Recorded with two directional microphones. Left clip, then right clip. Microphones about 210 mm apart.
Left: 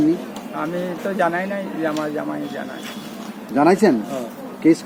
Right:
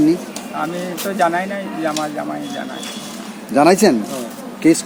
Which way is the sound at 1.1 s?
10° left (ahead or behind).